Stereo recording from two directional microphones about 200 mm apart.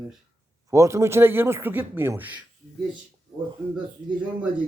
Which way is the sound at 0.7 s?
15° right (ahead or behind).